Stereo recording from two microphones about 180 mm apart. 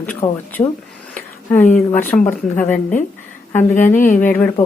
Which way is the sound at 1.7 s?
10° left (ahead or behind).